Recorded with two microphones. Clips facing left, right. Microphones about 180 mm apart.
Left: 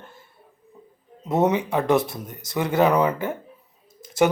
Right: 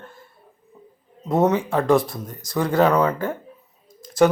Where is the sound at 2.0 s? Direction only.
25° left (ahead or behind).